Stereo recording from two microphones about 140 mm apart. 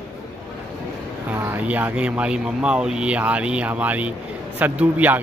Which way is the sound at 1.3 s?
15° right (ahead or behind).